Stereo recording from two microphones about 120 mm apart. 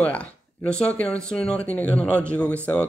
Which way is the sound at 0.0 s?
10° left (ahead or behind).